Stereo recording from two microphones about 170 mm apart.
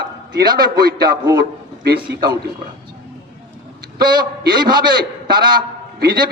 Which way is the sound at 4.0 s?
25° right (ahead or behind).